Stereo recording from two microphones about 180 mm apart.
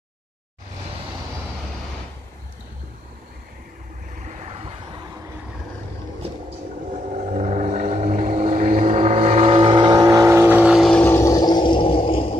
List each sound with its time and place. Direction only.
4.3 s vehicle: 40° right (ahead or behind)
7.3 s vehicle: 45° right (ahead or behind); by 12.4 s 30° left (ahead or behind)